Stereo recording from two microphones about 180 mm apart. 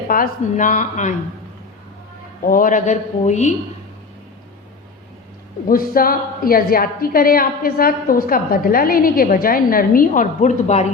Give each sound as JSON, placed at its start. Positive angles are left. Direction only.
{"t": 0.1, "sound": "a woman's voice", "side_deg": 50}
{"t": 2.5, "sound": "a woman's voice", "side_deg": 50}
{"t": 5.6, "sound": "a woman's voice", "side_deg": 55}